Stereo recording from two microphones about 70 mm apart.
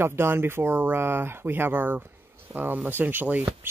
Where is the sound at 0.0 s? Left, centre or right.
Right.